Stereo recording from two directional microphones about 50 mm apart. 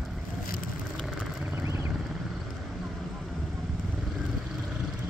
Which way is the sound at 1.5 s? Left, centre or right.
Right.